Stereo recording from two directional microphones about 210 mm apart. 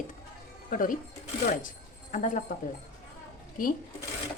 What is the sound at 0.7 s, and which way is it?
Speech, 40° left (ahead or behind).